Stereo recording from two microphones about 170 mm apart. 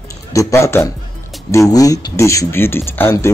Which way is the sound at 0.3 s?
20° left (ahead or behind).